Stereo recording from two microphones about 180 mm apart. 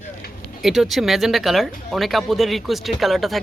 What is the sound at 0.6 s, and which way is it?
Speech, centre (ahead or behind).